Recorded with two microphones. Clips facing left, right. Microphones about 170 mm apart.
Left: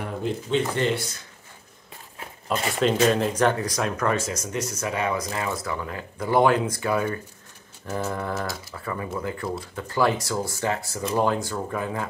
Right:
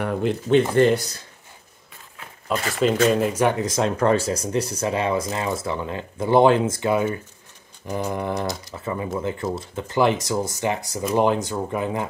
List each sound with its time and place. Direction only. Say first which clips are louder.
0.0 s speech: right 5 dB; 60° right (ahead or behind); by 1.2 s 40° right (ahead or behind)
2.7 s speech: right 2 dB; centre (ahead or behind)
3.5 s speech: right 4 dB; 25° right (ahead or behind)
7.8 s speech: right 3 dB; 15° right (ahead or behind)